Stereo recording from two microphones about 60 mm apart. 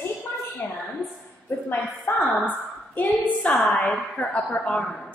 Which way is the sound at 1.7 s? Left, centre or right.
Left.